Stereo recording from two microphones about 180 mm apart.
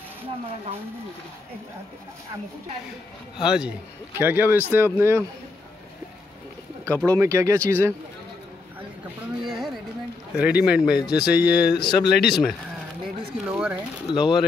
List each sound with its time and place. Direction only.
3.3 s speech: 5° right (ahead or behind)
6.9 s speech: 10° left (ahead or behind)
7.2 s speech: 15° right (ahead or behind)
9.4 s speech: centre (ahead or behind)
11.7 s speech: 25° left (ahead or behind)
12.1 s speech: 65° left (ahead or behind)
13.0 s speech: 5° right (ahead or behind)